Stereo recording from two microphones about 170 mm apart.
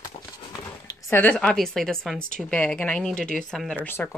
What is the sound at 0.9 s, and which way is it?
A woman's voice, 15° left (ahead or behind).